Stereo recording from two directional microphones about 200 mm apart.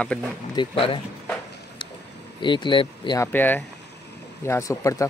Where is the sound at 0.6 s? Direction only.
25° left (ahead or behind).